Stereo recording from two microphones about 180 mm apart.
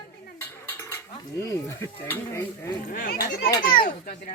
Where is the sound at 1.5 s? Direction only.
15° left (ahead or behind).